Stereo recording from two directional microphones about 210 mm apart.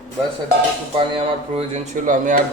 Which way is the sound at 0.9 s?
25° right (ahead or behind).